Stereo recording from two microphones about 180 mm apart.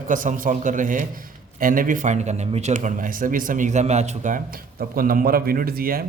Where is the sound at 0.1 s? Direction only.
45° right (ahead or behind).